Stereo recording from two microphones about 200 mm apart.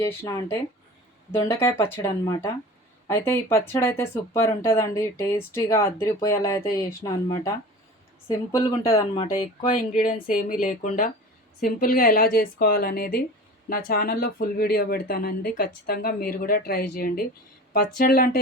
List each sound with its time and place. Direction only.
0.0 s speech: 15° left (ahead or behind)
8.5 s speech: 15° left (ahead or behind)
10.0 s speech: 40° left (ahead or behind)